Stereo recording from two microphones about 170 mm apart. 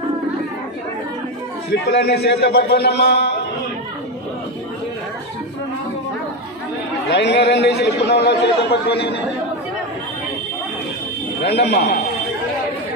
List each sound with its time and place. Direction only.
1.7 s a man's voice: 75° left (ahead or behind)
7.1 s a man's voice: 85° left
11.4 s a man's voice: 70° left (ahead or behind)